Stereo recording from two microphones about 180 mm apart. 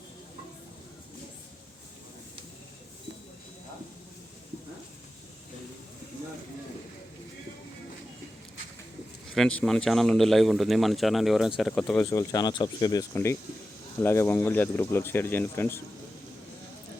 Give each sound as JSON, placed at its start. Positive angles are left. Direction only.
{"t": 9.3, "sound": "a man's voice", "side_deg": 5}
{"t": 12.1, "sound": "speech", "side_deg": 20}